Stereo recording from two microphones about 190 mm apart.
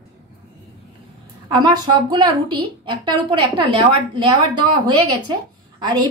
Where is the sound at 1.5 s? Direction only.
20° right (ahead or behind).